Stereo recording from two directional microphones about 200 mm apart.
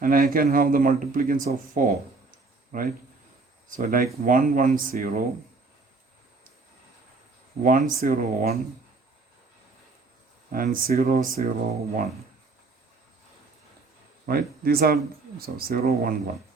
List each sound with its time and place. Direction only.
0.0 s speech: 45° right (ahead or behind)
7.6 s speech: 40° right (ahead or behind)
10.5 s speech: 45° right (ahead or behind)
14.3 s speech: 50° right (ahead or behind)